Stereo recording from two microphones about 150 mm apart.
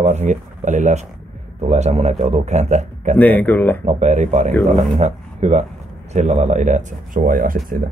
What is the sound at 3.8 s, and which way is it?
Speech, 50° right (ahead or behind).